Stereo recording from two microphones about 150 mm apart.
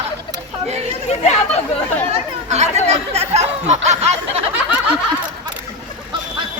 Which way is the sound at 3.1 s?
45° right (ahead or behind).